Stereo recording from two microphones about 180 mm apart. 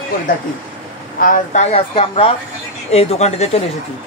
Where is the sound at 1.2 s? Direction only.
50° left (ahead or behind).